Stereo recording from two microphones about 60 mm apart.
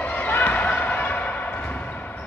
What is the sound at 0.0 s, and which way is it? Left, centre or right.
Basketball bounce, left.